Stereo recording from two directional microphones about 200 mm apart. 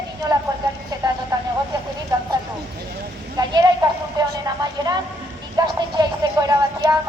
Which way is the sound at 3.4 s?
20° right (ahead or behind).